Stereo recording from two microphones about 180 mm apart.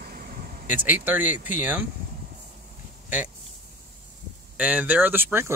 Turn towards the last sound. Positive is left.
turn(degrees=-10)  # may be behind; listen again after turning